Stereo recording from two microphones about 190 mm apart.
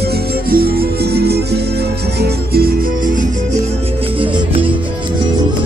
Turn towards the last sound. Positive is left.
turn(degrees=-25)  # may be behind; listen again after turning